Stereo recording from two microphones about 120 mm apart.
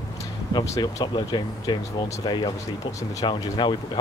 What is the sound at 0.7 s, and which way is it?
Speech, 30° left (ahead or behind).